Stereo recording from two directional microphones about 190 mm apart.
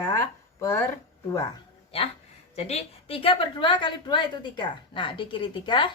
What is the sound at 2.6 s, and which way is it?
A woman's voice, 30° left (ahead or behind).